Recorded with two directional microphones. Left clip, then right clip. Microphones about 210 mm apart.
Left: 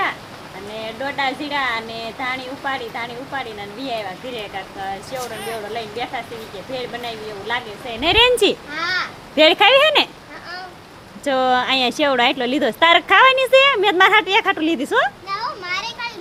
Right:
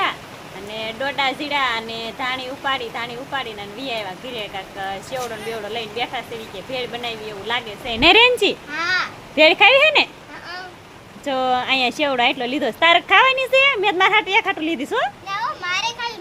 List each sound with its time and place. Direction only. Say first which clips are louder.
0.7 s speech: right 1 dB; centre (ahead or behind)
8.0 s speech: right 5 dB; 50° right (ahead or behind)
8.7 s speech: right 1 dB; 5° right (ahead or behind)
9.3 s speech: even; 5° left (ahead or behind)
11.3 s speech: left 2 dB; 10° left (ahead or behind)
15.3 s children playing: right 1 dB; 35° right (ahead or behind)